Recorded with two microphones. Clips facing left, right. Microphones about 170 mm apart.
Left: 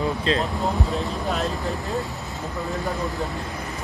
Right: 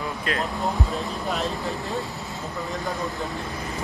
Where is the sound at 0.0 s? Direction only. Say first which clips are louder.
Left 5 dB; 25° left (ahead or behind).